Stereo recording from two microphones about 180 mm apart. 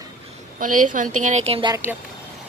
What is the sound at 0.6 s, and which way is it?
A woman's voice, 45° right (ahead or behind).